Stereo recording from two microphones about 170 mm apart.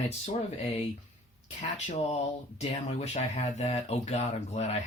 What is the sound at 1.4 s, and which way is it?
Speech, 45° left (ahead or behind).